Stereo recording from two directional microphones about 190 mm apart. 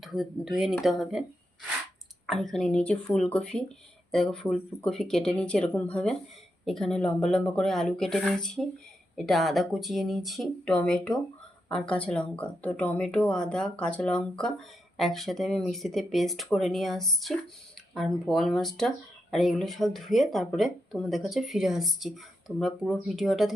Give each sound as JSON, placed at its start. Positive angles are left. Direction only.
{"t": 0.0, "sound": "speech", "side_deg": 0}
{"t": 2.2, "sound": "speech", "side_deg": 0}